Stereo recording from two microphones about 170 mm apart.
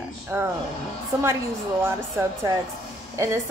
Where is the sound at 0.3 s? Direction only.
15° right (ahead or behind).